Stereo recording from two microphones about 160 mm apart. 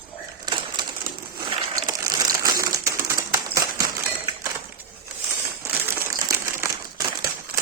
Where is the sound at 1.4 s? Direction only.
25° right (ahead or behind).